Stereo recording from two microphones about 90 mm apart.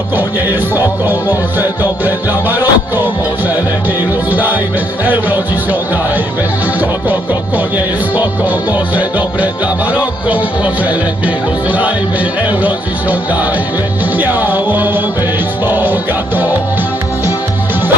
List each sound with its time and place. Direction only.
0.2 s music: 20° right (ahead or behind)
4.3 s music: 20° right (ahead or behind)
8.1 s speech: 20° right (ahead or behind)
12.5 s speech: 20° right (ahead or behind)
14.2 s music: 20° right (ahead or behind)